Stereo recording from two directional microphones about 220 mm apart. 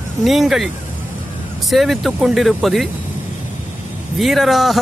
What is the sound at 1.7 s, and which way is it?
Speech, centre (ahead or behind).